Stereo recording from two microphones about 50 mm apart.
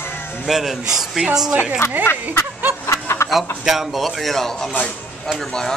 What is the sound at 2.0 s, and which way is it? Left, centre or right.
Speech, left.